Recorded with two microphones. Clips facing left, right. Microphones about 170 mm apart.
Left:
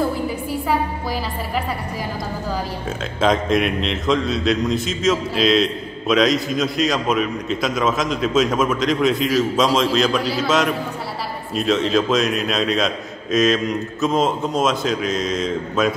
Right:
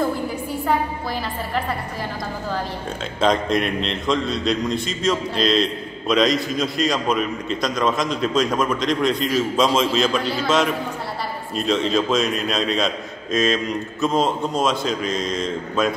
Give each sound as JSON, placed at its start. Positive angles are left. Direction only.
{"t": 3.2, "sound": "a man's voice", "side_deg": 0}